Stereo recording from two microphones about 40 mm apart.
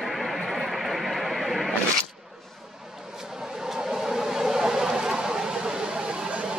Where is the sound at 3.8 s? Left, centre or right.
Centre.